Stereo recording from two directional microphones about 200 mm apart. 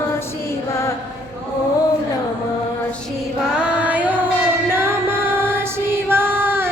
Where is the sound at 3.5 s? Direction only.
5° right (ahead or behind).